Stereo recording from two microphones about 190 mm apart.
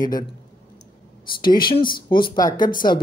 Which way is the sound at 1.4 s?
25° left (ahead or behind).